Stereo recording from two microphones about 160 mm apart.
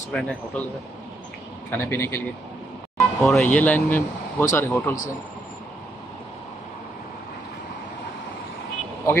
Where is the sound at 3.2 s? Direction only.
10° left (ahead or behind).